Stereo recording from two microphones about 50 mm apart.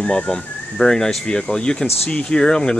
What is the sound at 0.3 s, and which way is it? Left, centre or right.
Speech, centre.